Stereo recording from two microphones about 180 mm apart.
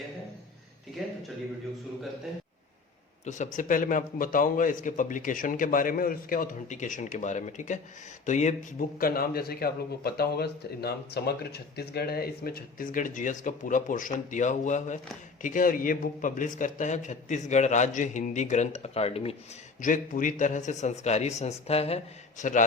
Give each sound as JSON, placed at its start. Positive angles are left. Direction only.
{"t": 3.2, "sound": "a man's voice", "side_deg": 40}
{"t": 9.0, "sound": "a man's voice", "side_deg": 55}
{"t": 19.8, "sound": "a man's voice", "side_deg": 45}